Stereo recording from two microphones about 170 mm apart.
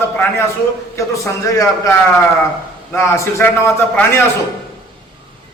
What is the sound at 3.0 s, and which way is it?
A man's voice, 15° left (ahead or behind).